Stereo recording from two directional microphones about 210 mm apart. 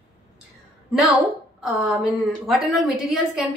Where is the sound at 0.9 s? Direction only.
Centre (ahead or behind).